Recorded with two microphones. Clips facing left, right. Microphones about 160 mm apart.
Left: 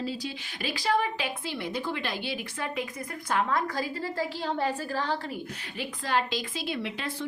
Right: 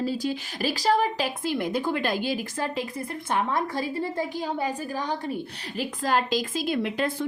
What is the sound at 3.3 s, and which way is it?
Speech, 20° right (ahead or behind).